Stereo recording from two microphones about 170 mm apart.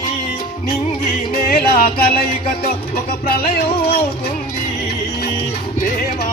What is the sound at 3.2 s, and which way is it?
Music, 65° left (ahead or behind).